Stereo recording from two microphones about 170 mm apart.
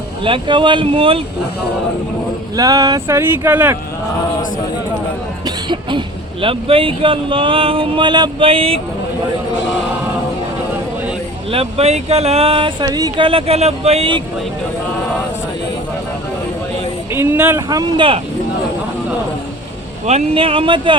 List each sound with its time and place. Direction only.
0.3 s speech: 30° right (ahead or behind)
2.6 s speech: 20° right (ahead or behind)
5.5 s music: 25° right (ahead or behind)
6.4 s speech: 30° right (ahead or behind)
11.5 s speech: 35° right (ahead or behind)
17.1 s speech: 15° right (ahead or behind)
17.7 s speech: 25° right (ahead or behind)
20.1 s speech: 35° right (ahead or behind)